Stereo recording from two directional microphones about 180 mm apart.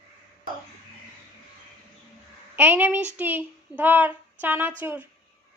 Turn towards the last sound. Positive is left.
turn(degrees=-10)  # may be behind; listen again after turning